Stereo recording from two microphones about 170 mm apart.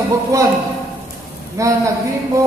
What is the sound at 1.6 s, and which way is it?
Speech, 20° right (ahead or behind).